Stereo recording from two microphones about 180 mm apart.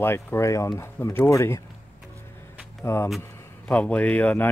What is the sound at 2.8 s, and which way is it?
A man's voice, 15° left (ahead or behind).